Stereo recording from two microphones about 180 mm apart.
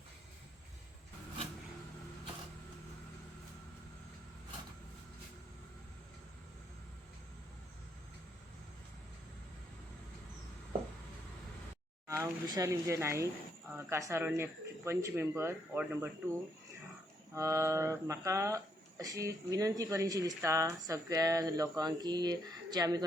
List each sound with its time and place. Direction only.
12.0 s speech: 15° right (ahead or behind)
17.3 s speech: 15° right (ahead or behind)